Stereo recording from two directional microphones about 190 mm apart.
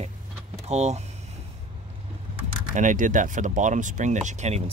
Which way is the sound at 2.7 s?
40° right (ahead or behind).